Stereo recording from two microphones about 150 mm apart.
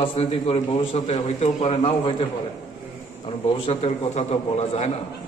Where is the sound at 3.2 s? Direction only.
40° left (ahead or behind).